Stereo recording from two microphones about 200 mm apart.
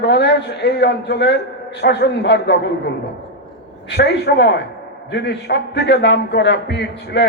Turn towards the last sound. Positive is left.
turn(degrees=60)  # may be behind; listen again after turning